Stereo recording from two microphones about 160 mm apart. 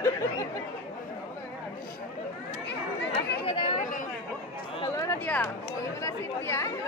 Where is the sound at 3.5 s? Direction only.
35° left (ahead or behind).